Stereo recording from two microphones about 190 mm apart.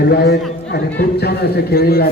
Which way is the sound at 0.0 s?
60° left (ahead or behind).